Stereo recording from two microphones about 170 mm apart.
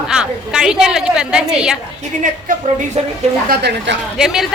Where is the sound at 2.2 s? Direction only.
45° right (ahead or behind).